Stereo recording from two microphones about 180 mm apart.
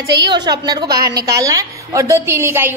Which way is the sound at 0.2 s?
25° right (ahead or behind).